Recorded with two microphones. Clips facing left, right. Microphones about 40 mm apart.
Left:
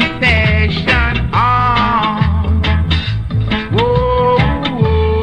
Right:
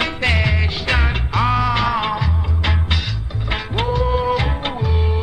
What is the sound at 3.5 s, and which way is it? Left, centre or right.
Music, left.